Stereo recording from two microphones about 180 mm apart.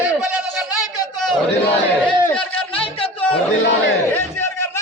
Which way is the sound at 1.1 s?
Centre (ahead or behind).